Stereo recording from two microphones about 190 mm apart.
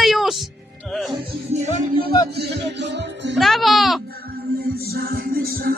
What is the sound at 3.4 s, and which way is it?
Speech, centre (ahead or behind).